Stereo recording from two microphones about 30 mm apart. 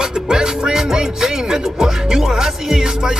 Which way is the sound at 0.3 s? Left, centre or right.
Right.